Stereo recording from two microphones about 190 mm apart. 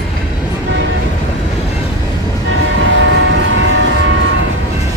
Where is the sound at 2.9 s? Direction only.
90° right.